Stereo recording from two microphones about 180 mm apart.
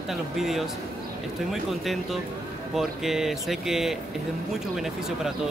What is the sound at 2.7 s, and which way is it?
Speech, centre (ahead or behind).